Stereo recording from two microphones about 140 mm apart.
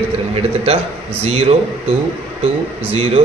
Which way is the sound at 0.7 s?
45° right (ahead or behind).